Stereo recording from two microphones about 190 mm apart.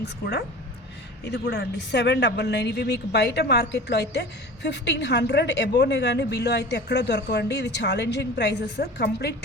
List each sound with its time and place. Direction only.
0.0 s speech: 60° left (ahead or behind)